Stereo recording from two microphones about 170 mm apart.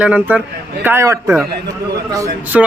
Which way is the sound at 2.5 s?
5° right (ahead or behind).